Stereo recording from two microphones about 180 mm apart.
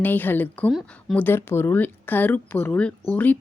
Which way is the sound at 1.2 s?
15° left (ahead or behind).